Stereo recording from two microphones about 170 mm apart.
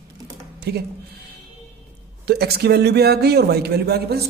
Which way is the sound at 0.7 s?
75° right (ahead or behind).